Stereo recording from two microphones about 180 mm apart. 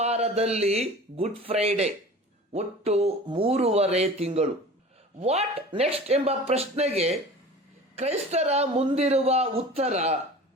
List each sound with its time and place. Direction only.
0.0 s speech: 35° right (ahead or behind)